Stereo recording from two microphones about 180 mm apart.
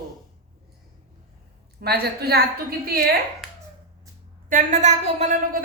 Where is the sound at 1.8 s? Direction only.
60° right (ahead or behind).